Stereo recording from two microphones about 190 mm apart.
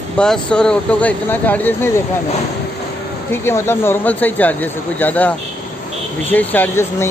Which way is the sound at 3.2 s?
15° left (ahead or behind).